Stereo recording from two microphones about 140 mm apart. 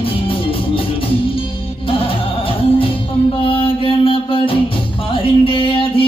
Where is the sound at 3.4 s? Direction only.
40° left (ahead or behind).